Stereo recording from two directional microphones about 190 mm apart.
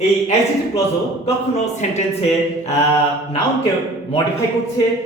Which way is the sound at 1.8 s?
35° left (ahead or behind).